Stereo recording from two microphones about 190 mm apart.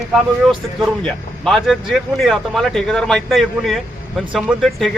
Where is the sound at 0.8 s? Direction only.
5° left (ahead or behind).